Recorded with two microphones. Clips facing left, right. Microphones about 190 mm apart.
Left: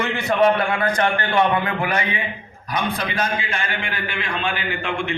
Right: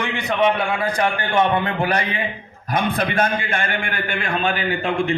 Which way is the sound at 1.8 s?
35° right (ahead or behind).